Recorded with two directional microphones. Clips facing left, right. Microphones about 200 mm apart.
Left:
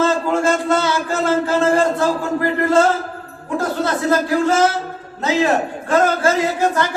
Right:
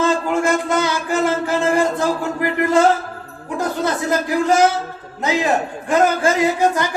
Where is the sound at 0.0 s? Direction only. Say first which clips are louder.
Left 1 dB; 15° right (ahead or behind).